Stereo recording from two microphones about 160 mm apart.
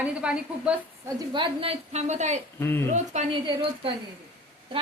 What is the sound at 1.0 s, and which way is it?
Speech, 30° right (ahead or behind).